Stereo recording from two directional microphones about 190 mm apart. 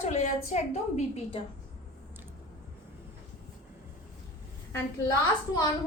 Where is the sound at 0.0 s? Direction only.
35° left (ahead or behind).